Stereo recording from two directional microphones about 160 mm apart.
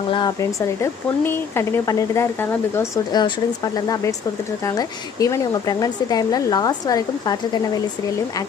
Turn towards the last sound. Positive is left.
turn(degrees=25)  # may be behind; listen again after turning